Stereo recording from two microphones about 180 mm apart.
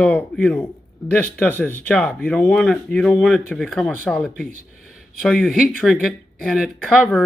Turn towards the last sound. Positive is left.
turn(degrees=5)  # may be behind; listen again after turning